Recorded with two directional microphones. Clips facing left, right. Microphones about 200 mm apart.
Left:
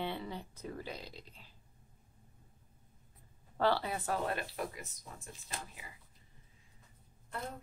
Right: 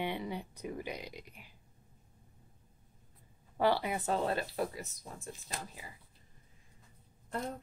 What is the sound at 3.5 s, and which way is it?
Speech, 15° right (ahead or behind).